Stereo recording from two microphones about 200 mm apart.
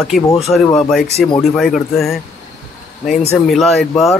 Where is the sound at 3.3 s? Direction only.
Centre (ahead or behind).